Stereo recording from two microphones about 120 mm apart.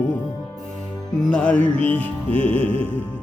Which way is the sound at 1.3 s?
10° left (ahead or behind).